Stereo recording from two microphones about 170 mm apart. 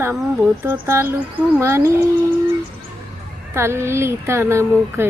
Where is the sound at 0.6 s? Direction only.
15° right (ahead or behind).